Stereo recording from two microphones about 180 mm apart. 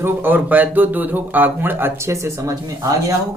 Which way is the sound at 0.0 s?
10° right (ahead or behind).